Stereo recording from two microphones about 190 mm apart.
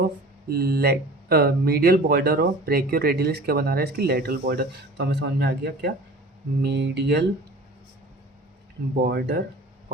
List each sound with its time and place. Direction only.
0.4 s speech: 55° right (ahead or behind)
9.0 s speech: 60° right (ahead or behind)